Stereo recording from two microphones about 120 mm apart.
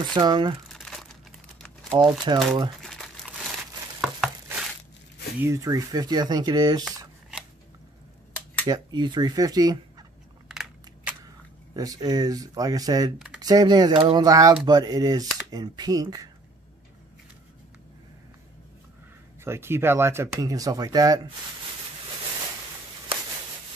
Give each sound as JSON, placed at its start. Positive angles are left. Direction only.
{"t": 0.0, "sound": "speech", "side_deg": -35}
{"t": 0.7, "sound": "crumpling", "side_deg": 0}
{"t": 1.9, "sound": "speech", "side_deg": -40}
{"t": 2.8, "sound": "crumpling", "side_deg": 0}
{"t": 5.4, "sound": "speech", "side_deg": -25}
{"t": 8.6, "sound": "speech", "side_deg": -35}
{"t": 10.5, "sound": "crushing", "side_deg": -5}
{"t": 11.7, "sound": "speech", "side_deg": -30}
{"t": 19.4, "sound": "speech", "side_deg": -20}